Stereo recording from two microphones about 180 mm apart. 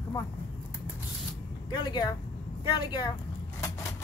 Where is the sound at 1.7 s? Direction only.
25° left (ahead or behind).